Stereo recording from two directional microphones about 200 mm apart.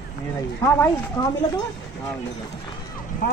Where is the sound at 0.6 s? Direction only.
10° left (ahead or behind).